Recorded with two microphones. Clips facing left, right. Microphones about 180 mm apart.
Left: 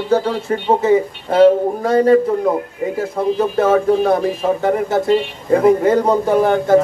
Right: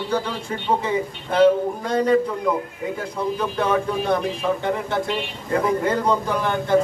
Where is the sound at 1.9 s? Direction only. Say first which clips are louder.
Left 6 dB; 50° left (ahead or behind).